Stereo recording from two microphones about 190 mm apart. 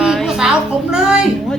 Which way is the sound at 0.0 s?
Centre (ahead or behind).